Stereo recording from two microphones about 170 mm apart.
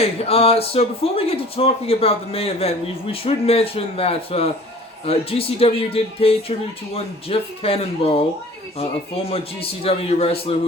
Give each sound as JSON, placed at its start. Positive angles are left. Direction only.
{"t": 0.0, "sound": "speech", "side_deg": 35}
{"t": 9.3, "sound": "speech", "side_deg": 35}